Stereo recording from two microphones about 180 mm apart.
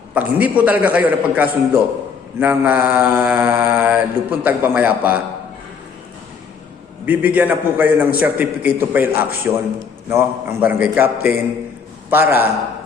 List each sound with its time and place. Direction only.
0.1 s mantra: 10° right (ahead or behind)
7.0 s mantra: 10° right (ahead or behind)
9.5 s a man's voice: 5° right (ahead or behind)
10.1 s mantra: 10° right (ahead or behind)